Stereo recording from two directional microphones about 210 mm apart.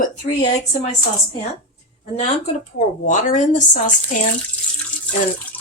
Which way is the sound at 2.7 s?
35° left (ahead or behind).